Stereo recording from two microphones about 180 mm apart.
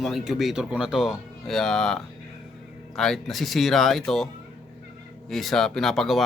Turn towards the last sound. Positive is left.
turn(degrees=0)  # may be behind; listen again after turning